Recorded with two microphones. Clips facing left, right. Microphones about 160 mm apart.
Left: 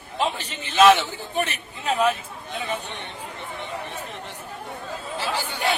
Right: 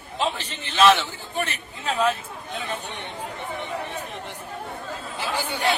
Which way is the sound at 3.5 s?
15° right (ahead or behind).